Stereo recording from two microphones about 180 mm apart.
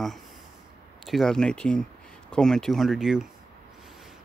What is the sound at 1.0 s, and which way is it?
Speech, centre (ahead or behind).